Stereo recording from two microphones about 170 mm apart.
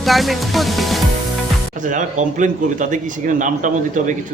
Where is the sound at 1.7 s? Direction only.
50° right (ahead or behind).